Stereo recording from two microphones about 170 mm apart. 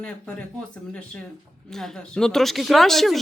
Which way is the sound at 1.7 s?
Centre (ahead or behind).